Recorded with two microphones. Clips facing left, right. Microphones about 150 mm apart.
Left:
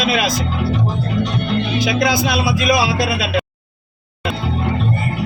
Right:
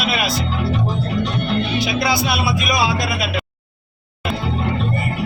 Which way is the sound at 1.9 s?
90° left.